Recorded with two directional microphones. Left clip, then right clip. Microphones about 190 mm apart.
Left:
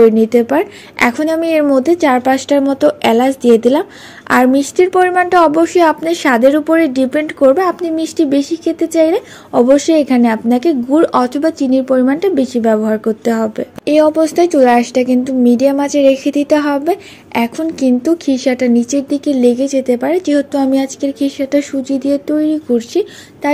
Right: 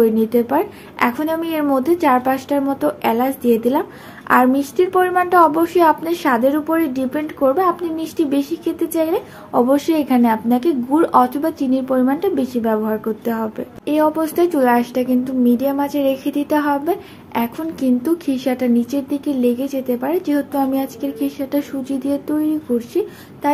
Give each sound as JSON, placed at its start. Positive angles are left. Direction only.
{"t": 0.2, "sound": "a woman's voice", "side_deg": 40}